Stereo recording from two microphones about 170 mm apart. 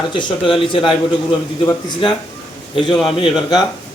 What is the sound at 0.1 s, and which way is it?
A man's voice, 25° left (ahead or behind).